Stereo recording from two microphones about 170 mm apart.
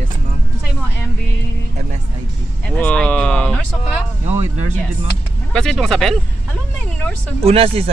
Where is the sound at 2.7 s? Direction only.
5° left (ahead or behind).